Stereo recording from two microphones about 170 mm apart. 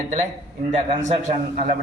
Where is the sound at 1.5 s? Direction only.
55° right (ahead or behind).